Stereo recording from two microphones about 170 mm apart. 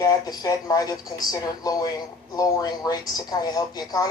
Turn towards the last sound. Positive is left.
turn(degrees=20)  # may be behind; listen again after turning